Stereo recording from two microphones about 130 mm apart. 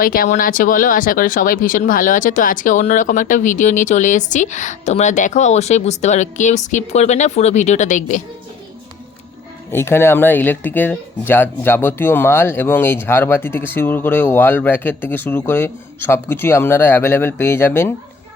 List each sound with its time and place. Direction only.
0.0 s speech: 90° left; by 8.2 s 70° left (ahead or behind)
9.7 s speech: 20° left (ahead or behind)